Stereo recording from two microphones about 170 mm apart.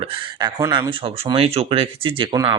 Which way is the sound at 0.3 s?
25° right (ahead or behind).